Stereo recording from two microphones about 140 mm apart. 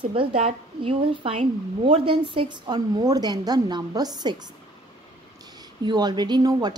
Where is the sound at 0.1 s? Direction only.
40° right (ahead or behind).